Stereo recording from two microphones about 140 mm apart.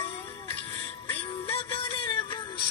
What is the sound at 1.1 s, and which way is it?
Music, 40° left (ahead or behind).